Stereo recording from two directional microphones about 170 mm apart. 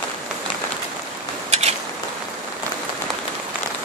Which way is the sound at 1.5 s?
40° right (ahead or behind).